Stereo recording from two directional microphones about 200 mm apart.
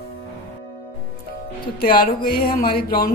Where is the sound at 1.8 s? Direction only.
50° left (ahead or behind).